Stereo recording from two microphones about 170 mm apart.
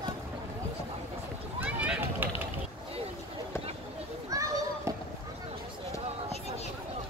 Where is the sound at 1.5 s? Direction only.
10° right (ahead or behind).